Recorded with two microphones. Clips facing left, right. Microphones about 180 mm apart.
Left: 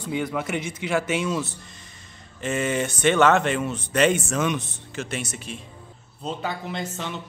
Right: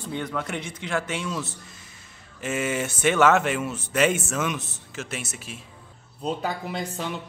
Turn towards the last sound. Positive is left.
turn(degrees=-10)  # may be behind; listen again after turning